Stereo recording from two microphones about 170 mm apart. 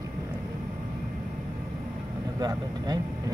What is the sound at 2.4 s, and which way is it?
Speech, 25° right (ahead or behind).